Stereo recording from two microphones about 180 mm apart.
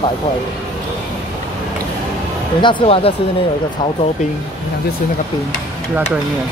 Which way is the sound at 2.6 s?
30° left (ahead or behind).